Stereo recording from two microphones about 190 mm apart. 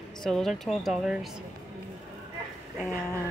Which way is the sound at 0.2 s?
Centre (ahead or behind).